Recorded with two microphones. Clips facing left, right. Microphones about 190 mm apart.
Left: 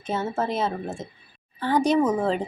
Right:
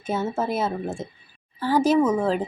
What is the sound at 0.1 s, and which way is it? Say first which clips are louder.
A woman's voice: right 1 dB; 10° right (ahead or behind).